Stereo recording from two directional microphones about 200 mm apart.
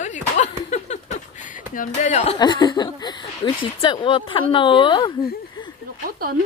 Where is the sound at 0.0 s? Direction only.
35° left (ahead or behind).